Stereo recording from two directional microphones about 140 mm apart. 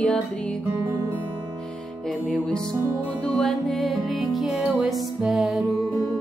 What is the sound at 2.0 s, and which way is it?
Music, 5° left (ahead or behind).